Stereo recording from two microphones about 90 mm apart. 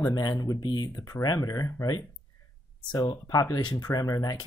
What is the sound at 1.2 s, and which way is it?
Speech, 40° left (ahead or behind).